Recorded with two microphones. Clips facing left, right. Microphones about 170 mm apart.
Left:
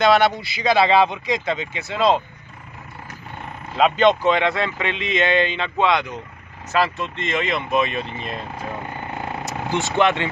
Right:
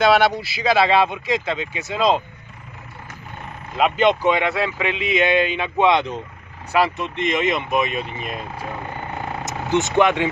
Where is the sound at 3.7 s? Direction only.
5° right (ahead or behind).